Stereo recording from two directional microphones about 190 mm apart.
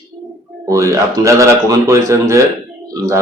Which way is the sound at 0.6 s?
15° right (ahead or behind).